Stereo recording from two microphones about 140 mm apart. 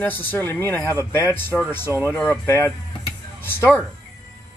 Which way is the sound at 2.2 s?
20° left (ahead or behind).